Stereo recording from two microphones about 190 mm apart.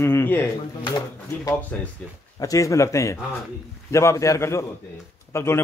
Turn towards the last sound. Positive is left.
turn(degrees=15)  # may be behind; listen again after turning